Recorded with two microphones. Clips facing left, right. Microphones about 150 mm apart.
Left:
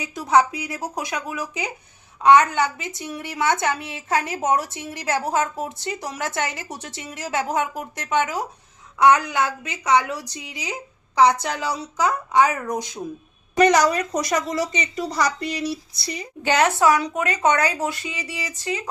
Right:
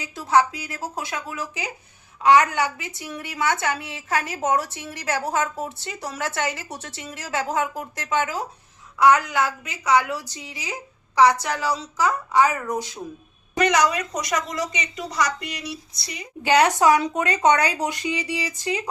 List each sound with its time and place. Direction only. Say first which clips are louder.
0.0 s a woman's voice: left 1 dB; 15° left (ahead or behind)
13.6 s a woman's voice: left 3 dB; 35° left (ahead or behind)
16.4 s speech: right 1 dB; 15° right (ahead or behind)